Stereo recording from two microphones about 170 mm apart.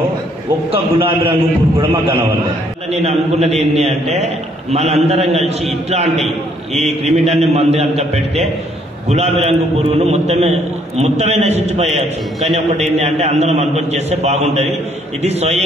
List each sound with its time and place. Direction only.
0.7 s a man's voice: 30° right (ahead or behind)